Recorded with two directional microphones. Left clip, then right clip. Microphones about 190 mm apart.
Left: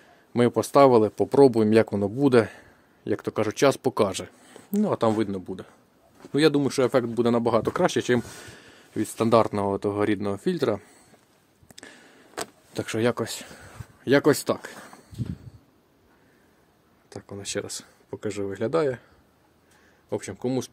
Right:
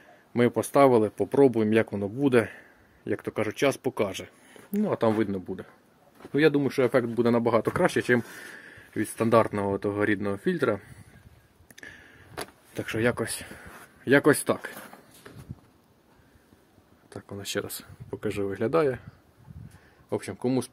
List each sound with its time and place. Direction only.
0.3 s speech: 20° left (ahead or behind)
4.8 s speech: 10° left (ahead or behind)
6.3 s speech: 20° left (ahead or behind)
11.7 s a sound: 30° left (ahead or behind)
12.7 s speech: 25° left (ahead or behind)
13.1 s speech: 15° left (ahead or behind)
17.1 s speech: 5° left (ahead or behind)
20.1 s speech: centre (ahead or behind)